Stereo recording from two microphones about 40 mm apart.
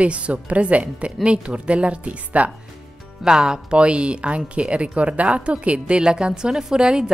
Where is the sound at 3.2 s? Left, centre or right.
Centre.